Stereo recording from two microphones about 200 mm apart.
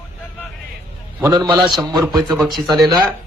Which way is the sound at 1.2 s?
20° right (ahead or behind).